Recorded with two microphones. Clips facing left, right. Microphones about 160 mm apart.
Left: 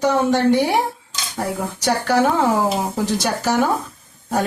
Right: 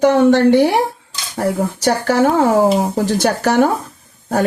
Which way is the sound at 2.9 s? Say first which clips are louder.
Right 5 dB; 55° right (ahead or behind).